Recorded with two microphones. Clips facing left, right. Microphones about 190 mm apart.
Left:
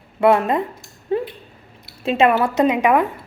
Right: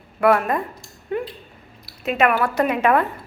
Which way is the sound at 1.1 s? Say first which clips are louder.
Left 4 dB; 30° left (ahead or behind).